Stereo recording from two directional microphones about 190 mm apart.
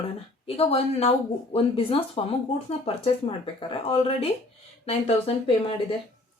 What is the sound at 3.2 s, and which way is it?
A woman's voice, 30° left (ahead or behind).